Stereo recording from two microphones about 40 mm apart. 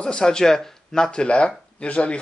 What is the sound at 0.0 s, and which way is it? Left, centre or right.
Speech, left.